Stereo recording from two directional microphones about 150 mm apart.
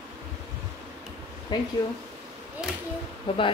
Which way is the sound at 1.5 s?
30° left (ahead or behind).